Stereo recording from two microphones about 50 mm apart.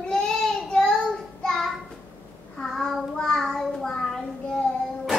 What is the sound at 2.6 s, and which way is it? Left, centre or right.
Child singing, centre.